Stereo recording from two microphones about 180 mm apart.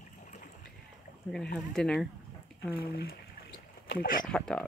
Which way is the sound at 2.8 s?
60° left (ahead or behind).